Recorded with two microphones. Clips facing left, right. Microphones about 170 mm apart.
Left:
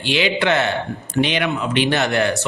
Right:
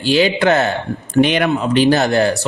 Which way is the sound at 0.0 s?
40° right (ahead or behind).